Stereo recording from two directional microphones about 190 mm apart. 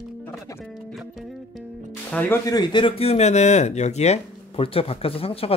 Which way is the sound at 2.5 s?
25° left (ahead or behind).